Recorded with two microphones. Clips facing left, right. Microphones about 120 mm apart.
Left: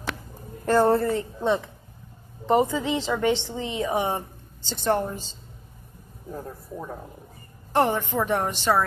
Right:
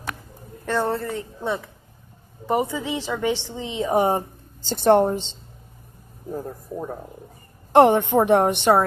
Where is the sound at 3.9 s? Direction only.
40° right (ahead or behind).